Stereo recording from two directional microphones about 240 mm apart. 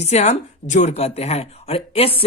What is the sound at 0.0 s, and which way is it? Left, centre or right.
Speech, left.